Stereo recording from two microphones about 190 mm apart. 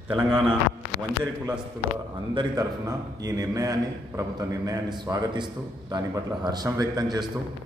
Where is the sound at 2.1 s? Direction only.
20° right (ahead or behind).